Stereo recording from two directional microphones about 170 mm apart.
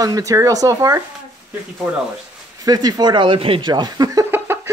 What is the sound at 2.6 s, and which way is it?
Speech, 25° right (ahead or behind).